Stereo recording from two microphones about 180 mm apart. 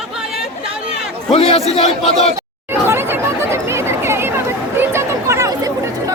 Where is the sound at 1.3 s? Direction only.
30° left (ahead or behind).